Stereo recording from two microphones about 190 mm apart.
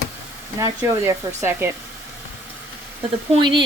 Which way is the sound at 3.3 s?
25° right (ahead or behind).